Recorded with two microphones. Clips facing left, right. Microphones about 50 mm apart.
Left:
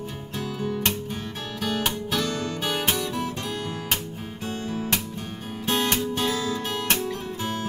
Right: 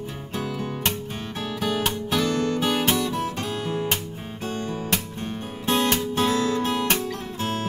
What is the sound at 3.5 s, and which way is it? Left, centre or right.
Guitar, centre.